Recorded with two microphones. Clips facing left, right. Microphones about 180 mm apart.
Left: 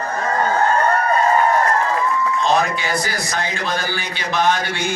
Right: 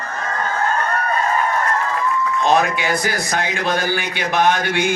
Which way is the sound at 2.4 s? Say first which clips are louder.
Right 3 dB; 55° right (ahead or behind).